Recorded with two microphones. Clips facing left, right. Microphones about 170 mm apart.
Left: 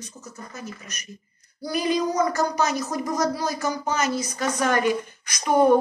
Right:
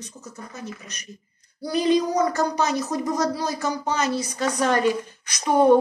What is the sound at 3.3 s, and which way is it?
A woman's voice, 30° right (ahead or behind).